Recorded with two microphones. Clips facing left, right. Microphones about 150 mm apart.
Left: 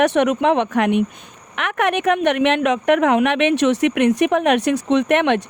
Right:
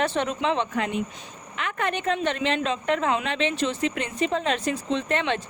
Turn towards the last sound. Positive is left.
turn(degrees=75)  # may be behind; listen again after turning